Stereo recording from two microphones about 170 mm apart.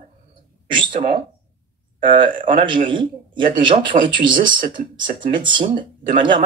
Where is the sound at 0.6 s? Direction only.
30° right (ahead or behind).